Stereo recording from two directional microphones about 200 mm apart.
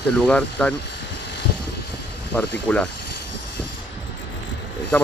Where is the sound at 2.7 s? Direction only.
5° left (ahead or behind).